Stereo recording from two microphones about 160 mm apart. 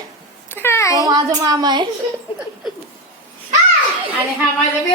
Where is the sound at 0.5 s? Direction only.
15° left (ahead or behind).